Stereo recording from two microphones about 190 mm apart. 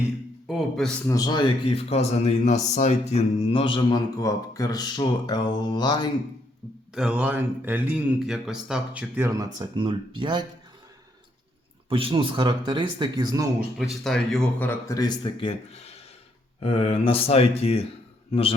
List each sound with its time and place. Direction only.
0.4 s a man's voice: centre (ahead or behind)
1.0 s mantra: 20° left (ahead or behind)
6.9 s speech: 5° right (ahead or behind); by 10.4 s 25° right (ahead or behind)
11.9 s a man's voice: 30° right (ahead or behind)
13.7 s speech: centre (ahead or behind); by 17.8 s 30° left (ahead or behind)